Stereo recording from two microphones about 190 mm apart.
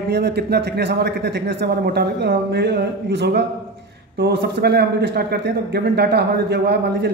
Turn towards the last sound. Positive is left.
turn(degrees=-60)  # may be behind; listen again after turning